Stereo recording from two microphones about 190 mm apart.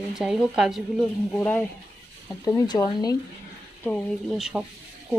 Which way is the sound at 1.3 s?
10° left (ahead or behind).